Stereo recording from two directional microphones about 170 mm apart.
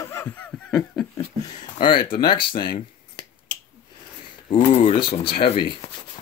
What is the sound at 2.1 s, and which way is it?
Speech, 30° left (ahead or behind).